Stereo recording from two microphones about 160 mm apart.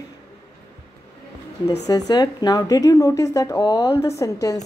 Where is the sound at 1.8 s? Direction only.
25° left (ahead or behind).